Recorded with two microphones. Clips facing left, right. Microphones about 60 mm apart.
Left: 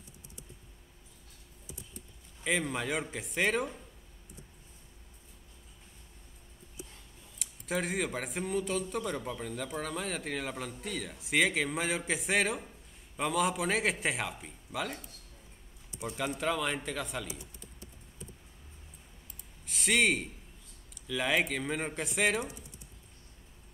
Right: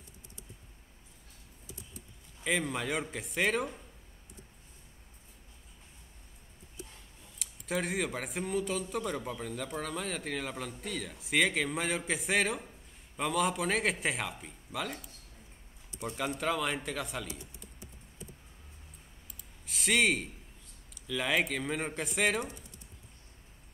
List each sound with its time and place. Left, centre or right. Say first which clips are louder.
2.4 s a man's voice: even; centre
7.3 s a man's voice: even; centre
16.0 s a man's voice: even; centre
19.6 s a man's voice: even; centre
22.4 s speech: even; centre